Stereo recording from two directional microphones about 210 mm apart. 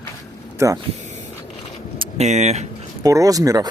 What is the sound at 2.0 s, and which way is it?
Speech, 30° right (ahead or behind).